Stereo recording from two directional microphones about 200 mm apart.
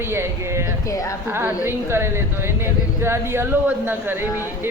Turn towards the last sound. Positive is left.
turn(degrees=-10)  # may be behind; listen again after turning